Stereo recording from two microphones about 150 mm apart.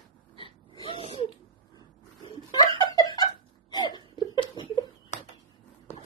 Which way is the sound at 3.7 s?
30° left (ahead or behind).